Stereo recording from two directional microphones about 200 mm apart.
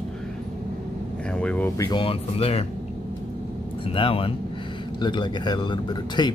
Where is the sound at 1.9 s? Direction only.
25° left (ahead or behind).